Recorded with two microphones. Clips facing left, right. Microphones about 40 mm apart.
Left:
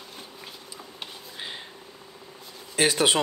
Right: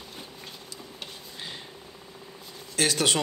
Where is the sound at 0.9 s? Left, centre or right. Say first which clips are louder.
Left 3 dB; centre.